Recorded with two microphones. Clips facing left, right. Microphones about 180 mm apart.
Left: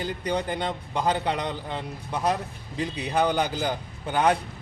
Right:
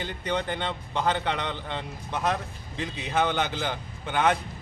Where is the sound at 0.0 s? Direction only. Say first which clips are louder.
Left 2 dB; 35° left (ahead or behind).